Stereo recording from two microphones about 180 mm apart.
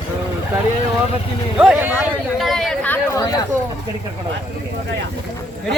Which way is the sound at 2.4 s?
Centre (ahead or behind).